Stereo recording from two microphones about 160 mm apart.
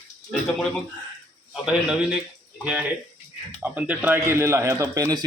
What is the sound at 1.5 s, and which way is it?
A man's voice, 5° right (ahead or behind).